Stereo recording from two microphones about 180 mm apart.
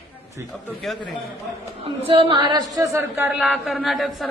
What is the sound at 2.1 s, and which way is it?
Speech, 30° right (ahead or behind).